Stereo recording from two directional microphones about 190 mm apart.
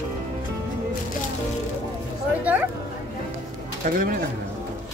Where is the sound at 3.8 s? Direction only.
50° right (ahead or behind).